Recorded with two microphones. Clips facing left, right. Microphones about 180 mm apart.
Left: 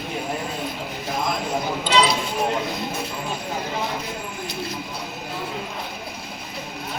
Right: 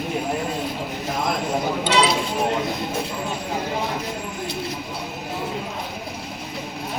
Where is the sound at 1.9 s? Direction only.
80° right.